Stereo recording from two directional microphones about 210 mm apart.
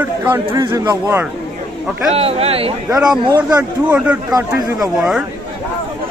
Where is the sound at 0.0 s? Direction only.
10° right (ahead or behind).